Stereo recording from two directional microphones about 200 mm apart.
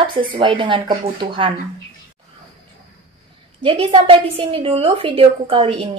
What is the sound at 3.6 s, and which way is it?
A woman's voice, 25° right (ahead or behind).